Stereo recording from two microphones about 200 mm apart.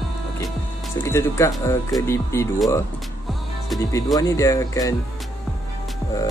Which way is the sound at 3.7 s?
15° left (ahead or behind).